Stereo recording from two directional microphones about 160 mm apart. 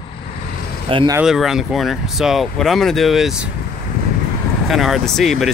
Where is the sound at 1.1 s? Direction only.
5° right (ahead or behind).